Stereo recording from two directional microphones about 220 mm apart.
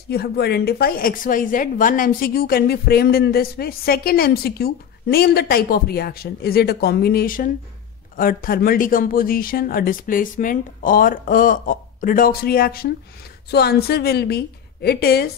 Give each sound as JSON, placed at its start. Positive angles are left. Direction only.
{"t": 0.1, "sound": "a woman's voice", "side_deg": 45}